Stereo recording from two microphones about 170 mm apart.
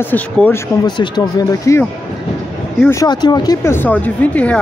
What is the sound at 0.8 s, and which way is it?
Speech, 25° left (ahead or behind).